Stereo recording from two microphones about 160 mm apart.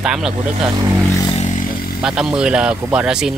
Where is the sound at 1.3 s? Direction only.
45° left (ahead or behind).